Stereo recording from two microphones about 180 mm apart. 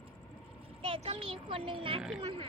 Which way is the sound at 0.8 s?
30° right (ahead or behind).